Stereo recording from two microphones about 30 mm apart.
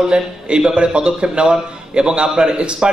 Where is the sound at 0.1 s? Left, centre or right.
Right.